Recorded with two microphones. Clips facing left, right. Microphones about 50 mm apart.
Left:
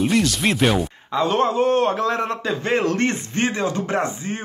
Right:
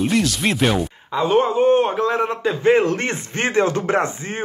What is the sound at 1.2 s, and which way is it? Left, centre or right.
A man's voice, centre.